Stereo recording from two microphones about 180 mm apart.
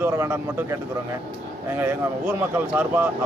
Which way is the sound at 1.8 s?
10° right (ahead or behind).